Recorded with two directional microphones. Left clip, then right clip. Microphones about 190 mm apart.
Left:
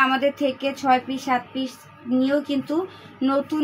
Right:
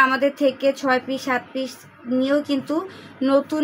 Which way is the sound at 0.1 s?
45° right (ahead or behind).